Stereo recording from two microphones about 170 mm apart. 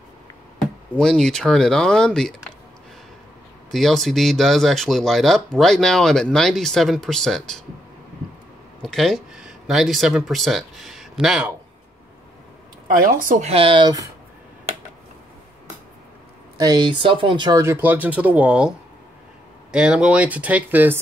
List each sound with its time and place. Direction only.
0.6 s speech: 5° left (ahead or behind)
3.7 s speech: centre (ahead or behind)
8.8 s speech: centre (ahead or behind)
12.8 s speech: 55° right (ahead or behind); by 14.1 s 20° right (ahead or behind)
16.5 s speech: 25° right (ahead or behind); by 18.7 s 5° right (ahead or behind)
19.7 s speech: 5° right (ahead or behind)